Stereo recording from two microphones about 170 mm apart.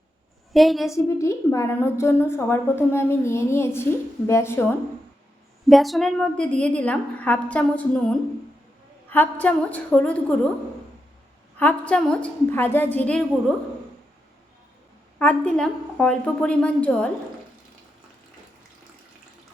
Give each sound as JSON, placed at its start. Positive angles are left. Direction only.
{"t": 0.5, "sound": "a woman's voice", "side_deg": 0}
{"t": 0.9, "sound": "a woman's voice", "side_deg": 15}
{"t": 5.6, "sound": "a woman's voice", "side_deg": 0}
{"t": 11.6, "sound": "a woman's voice", "side_deg": 5}
{"t": 15.2, "sound": "a woman's voice", "side_deg": 10}